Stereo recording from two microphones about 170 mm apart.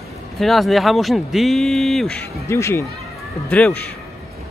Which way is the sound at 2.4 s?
15° left (ahead or behind).